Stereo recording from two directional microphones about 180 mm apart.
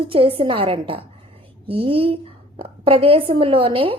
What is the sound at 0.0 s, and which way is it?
A woman's voice, 30° right (ahead or behind).